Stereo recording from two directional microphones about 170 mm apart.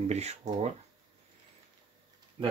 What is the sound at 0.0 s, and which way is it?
Speech, 40° right (ahead or behind).